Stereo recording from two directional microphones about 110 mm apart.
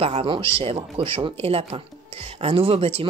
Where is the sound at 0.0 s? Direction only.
60° right (ahead or behind).